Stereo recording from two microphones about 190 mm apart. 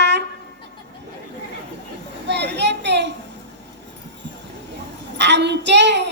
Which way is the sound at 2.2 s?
65° right (ahead or behind).